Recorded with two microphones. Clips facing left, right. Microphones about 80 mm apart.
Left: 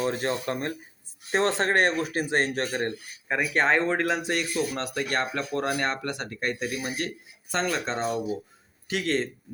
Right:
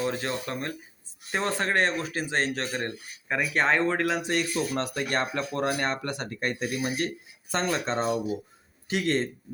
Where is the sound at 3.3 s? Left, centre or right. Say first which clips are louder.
Left 1 dB; centre.